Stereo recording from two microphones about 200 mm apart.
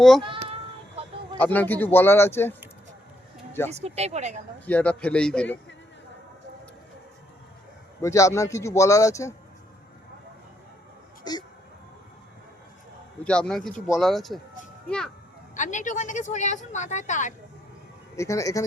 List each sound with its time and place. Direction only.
0.0 s a man's voice: centre (ahead or behind)
1.4 s a man's voice: 10° left (ahead or behind)
3.7 s speech: 30° right (ahead or behind)
4.6 s a man's voice: 5° left (ahead or behind)
8.0 s a man's voice: 15° left (ahead or behind)
11.2 s a sound: 20° left (ahead or behind)
13.2 s a man's voice: 5° left (ahead or behind)
15.5 s a woman's voice: 40° left (ahead or behind)
18.2 s a man's voice: 15° left (ahead or behind)